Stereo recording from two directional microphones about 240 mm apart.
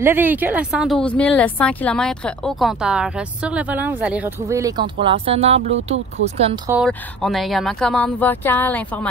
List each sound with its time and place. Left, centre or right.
0.0 s speech: centre; by 6.6 s right
6.9 s speech: centre